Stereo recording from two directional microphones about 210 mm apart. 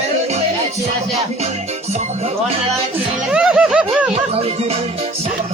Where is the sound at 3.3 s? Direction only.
5° right (ahead or behind).